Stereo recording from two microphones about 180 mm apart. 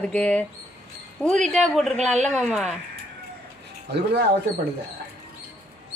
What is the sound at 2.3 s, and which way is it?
Speech, centre (ahead or behind).